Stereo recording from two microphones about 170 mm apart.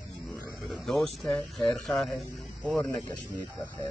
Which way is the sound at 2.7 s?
15° left (ahead or behind).